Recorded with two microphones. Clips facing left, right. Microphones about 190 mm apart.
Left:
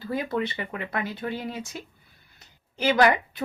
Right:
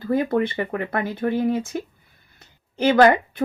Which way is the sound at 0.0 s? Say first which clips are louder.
Right 7 dB; 50° right (ahead or behind).